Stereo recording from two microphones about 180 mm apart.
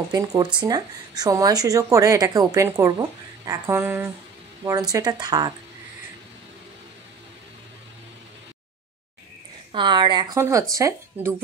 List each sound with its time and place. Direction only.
0.1 s speech: 20° right (ahead or behind)
9.7 s speech: 25° right (ahead or behind)